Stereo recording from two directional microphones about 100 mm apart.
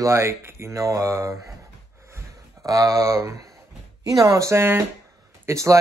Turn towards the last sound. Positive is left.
turn(degrees=-30)  # may be behind; listen again after turning